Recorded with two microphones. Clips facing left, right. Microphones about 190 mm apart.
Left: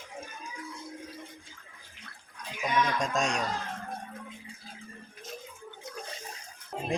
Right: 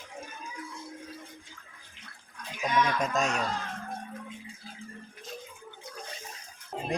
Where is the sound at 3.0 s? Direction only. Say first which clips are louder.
Right 1 dB; 5° right (ahead or behind).